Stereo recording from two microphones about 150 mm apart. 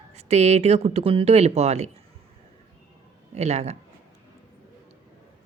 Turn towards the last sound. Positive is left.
turn(degrees=-45)  # may be behind; listen again after turning